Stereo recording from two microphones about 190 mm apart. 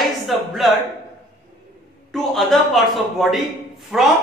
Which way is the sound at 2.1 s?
Centre (ahead or behind).